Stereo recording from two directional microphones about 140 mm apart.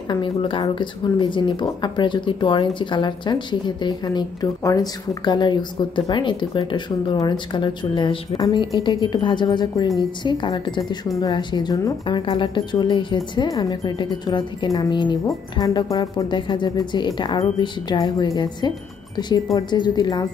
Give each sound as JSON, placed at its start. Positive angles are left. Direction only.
{"t": 0.1, "sound": "a woman's voice", "side_deg": 35}
{"t": 12.2, "sound": "a woman's voice", "side_deg": 35}